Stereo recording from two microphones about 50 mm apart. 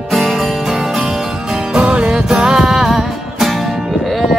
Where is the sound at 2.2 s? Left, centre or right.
Centre.